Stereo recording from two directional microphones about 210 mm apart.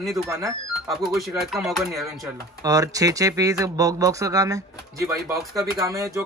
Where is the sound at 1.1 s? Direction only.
Centre (ahead or behind).